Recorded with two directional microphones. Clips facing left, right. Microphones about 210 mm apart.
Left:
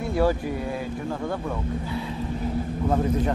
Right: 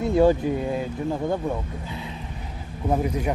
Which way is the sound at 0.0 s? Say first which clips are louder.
Right 5 dB; 20° right (ahead or behind).